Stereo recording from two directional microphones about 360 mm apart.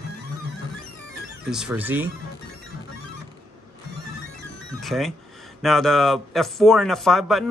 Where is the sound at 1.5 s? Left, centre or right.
Centre.